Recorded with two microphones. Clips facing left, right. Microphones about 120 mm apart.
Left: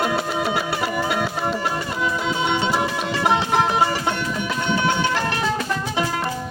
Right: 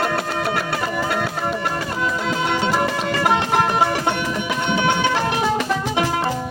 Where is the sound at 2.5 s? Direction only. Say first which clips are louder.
Right 3 dB; 5° right (ahead or behind).